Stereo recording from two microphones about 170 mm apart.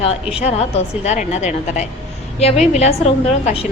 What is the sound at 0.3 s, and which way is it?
A woman's voice, 40° left (ahead or behind).